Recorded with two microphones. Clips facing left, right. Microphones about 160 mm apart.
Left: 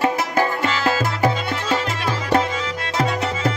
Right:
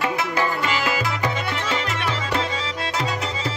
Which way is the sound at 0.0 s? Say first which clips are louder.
Left 3 dB; 45° left (ahead or behind).